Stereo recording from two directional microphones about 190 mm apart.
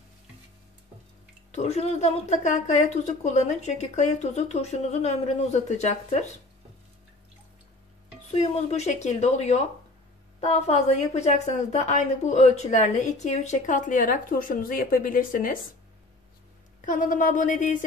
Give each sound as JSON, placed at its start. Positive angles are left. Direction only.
{"t": 1.5, "sound": "a woman's voice", "side_deg": 35}
{"t": 8.3, "sound": "a woman's voice", "side_deg": 35}
{"t": 16.8, "sound": "speech", "side_deg": 45}